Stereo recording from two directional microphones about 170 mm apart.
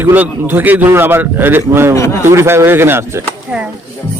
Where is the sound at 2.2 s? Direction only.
15° right (ahead or behind).